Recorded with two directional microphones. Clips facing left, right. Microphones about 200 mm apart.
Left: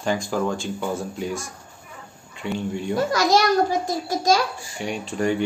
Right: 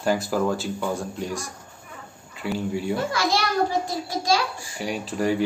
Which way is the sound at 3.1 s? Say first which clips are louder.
Left 6 dB; 40° left (ahead or behind).